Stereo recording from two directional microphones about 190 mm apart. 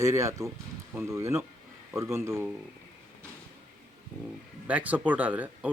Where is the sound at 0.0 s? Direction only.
15° right (ahead or behind).